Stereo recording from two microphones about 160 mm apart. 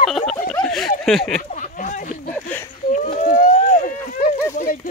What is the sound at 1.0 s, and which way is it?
Speech, centre (ahead or behind).